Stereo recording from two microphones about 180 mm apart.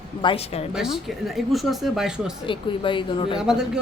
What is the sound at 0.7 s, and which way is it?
Speech, centre (ahead or behind).